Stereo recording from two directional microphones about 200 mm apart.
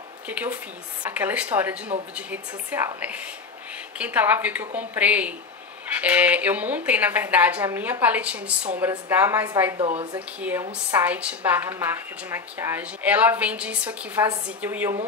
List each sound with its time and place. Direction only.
0.3 s a woman's voice: 10° right (ahead or behind)
4.0 s a woman's voice: 10° right (ahead or behind)
9.8 s speech: 30° right (ahead or behind)
10.1 s a woman's voice: 5° right (ahead or behind)